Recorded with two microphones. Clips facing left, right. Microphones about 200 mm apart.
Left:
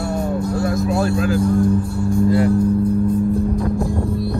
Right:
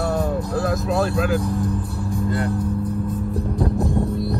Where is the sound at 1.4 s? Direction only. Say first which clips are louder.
Left 7 dB; centre (ahead or behind).